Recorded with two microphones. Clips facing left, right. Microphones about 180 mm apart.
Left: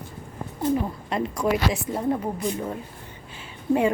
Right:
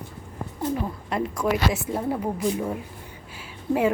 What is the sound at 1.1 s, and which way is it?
A woman's voice, 5° right (ahead or behind).